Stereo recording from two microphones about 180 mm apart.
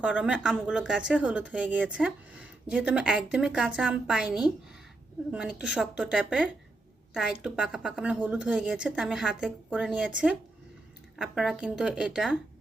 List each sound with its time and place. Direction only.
0.0 s a woman's voice: 5° right (ahead or behind)